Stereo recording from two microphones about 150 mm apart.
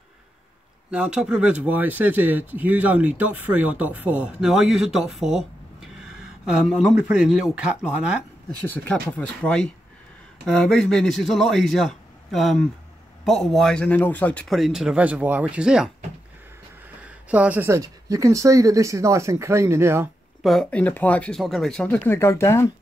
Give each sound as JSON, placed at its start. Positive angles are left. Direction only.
{"t": 0.8, "sound": "speech", "side_deg": -5}
{"t": 8.6, "sound": "a man's voice", "side_deg": 10}
{"t": 17.3, "sound": "speech", "side_deg": -10}
{"t": 20.4, "sound": "speech", "side_deg": 5}